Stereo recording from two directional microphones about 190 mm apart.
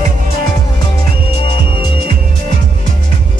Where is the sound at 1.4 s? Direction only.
30° left (ahead or behind).